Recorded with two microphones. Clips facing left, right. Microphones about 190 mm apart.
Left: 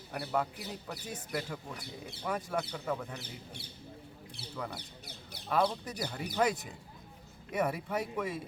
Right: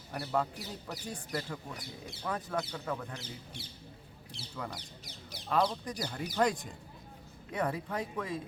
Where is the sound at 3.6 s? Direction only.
60° left (ahead or behind).